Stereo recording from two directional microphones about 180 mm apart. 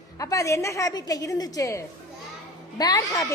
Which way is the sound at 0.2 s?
20° left (ahead or behind).